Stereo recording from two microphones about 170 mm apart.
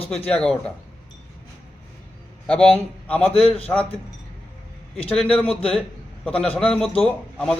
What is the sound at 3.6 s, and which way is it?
Speech, 5° left (ahead or behind).